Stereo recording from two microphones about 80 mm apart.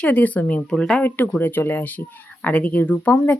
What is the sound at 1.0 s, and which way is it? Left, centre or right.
Speech, left.